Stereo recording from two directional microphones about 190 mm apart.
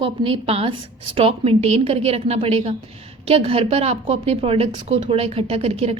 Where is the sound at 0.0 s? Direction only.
30° right (ahead or behind).